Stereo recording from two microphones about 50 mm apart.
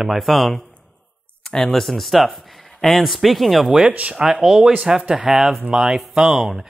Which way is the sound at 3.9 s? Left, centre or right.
Right.